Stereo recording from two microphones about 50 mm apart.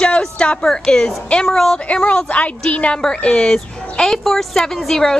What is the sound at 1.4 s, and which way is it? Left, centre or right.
Speech, centre.